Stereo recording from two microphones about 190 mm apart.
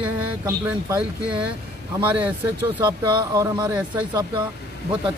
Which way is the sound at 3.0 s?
20° right (ahead or behind).